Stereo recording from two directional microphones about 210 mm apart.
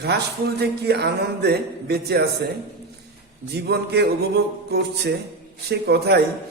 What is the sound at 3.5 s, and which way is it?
A man's voice, 50° right (ahead or behind).